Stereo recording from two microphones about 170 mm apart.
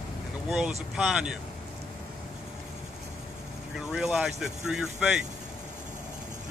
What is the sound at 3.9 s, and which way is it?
Speech, 5° right (ahead or behind).